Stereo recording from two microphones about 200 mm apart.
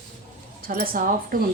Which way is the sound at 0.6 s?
45° right (ahead or behind).